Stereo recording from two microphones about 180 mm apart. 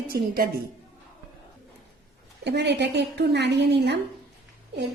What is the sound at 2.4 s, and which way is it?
A woman's voice, 70° right (ahead or behind).